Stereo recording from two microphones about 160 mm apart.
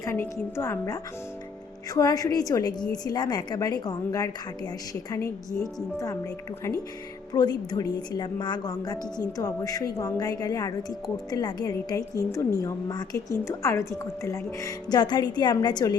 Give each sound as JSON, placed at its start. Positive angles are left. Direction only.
{"t": 0.0, "sound": "a woman's voice", "side_deg": 15}
{"t": 5.5, "sound": "speech", "side_deg": 20}
{"t": 7.3, "sound": "speech", "side_deg": 25}